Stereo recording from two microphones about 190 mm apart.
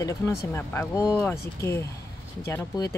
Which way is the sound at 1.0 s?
5° right (ahead or behind).